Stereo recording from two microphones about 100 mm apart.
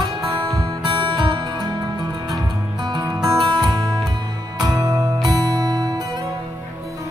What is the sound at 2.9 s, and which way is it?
Music, 40° right (ahead or behind).